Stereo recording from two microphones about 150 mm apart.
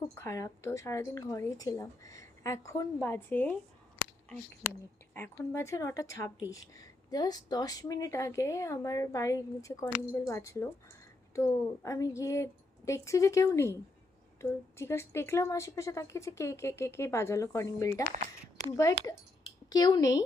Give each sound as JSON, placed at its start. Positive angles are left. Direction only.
{"t": 0.2, "sound": "speech", "side_deg": 20}
{"t": 5.1, "sound": "speech", "side_deg": 15}